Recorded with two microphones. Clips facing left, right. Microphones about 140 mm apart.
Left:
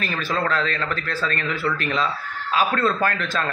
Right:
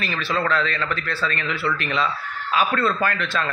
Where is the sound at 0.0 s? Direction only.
40° left (ahead or behind).